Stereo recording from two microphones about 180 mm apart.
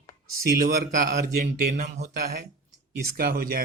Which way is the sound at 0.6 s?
50° right (ahead or behind).